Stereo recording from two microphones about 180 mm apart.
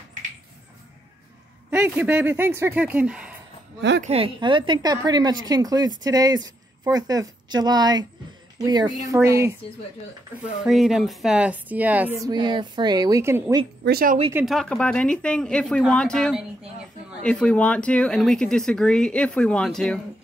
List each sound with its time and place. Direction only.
1.7 s speech: 10° right (ahead or behind)
4.0 s a woman's voice: 35° right (ahead or behind); by 9.6 s 15° right (ahead or behind)
10.4 s speech: 5° right (ahead or behind)
12.3 s a woman's voice: 25° right (ahead or behind)
13.8 s speech: 55° right (ahead or behind)
14.3 s speech: centre (ahead or behind)